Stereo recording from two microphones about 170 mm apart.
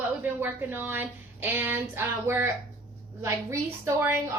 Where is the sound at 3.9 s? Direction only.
15° right (ahead or behind).